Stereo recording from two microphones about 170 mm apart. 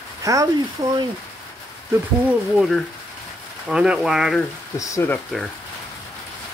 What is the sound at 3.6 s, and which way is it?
Speech, 5° right (ahead or behind).